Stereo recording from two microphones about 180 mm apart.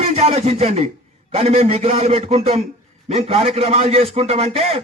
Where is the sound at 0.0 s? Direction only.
35° right (ahead or behind).